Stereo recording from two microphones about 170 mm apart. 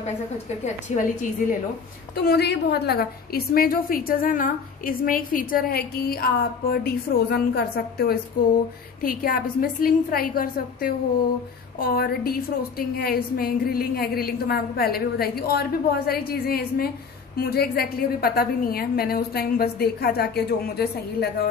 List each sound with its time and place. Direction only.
0.9 s a woman's voice: 45° left (ahead or behind)
2.1 s a woman's voice: 70° left (ahead or behind)